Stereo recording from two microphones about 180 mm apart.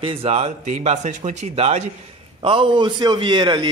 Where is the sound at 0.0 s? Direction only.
30° right (ahead or behind).